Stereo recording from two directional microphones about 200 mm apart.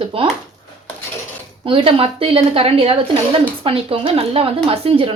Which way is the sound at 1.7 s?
25° right (ahead or behind).